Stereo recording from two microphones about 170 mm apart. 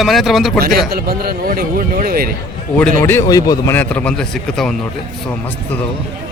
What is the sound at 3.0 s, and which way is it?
A man's voice, 15° left (ahead or behind).